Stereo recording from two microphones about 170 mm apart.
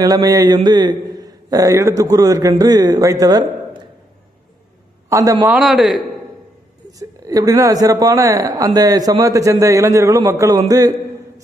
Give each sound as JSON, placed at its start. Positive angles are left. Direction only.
{"t": 0.0, "sound": "a man's voice", "side_deg": -20}
{"t": 5.1, "sound": "a man's voice", "side_deg": -20}
{"t": 5.5, "sound": "a man's voice", "side_deg": -5}
{"t": 6.9, "sound": "a man's voice", "side_deg": -20}
{"t": 10.7, "sound": "a sound", "side_deg": -20}